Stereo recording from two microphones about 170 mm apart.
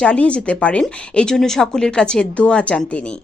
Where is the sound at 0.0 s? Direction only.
5° left (ahead or behind).